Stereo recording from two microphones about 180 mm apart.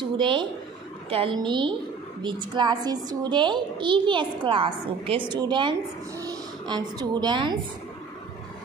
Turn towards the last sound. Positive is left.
turn(degrees=-25)  # may be behind; listen again after turning